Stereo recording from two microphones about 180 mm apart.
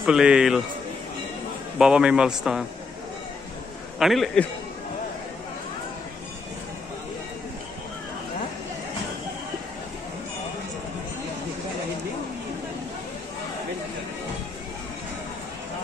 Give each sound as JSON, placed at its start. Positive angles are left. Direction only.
{"t": 0.0, "sound": "a man's voice", "side_deg": -5}
{"t": 1.8, "sound": "a man's voice", "side_deg": -5}
{"t": 4.0, "sound": "a man's voice", "side_deg": 0}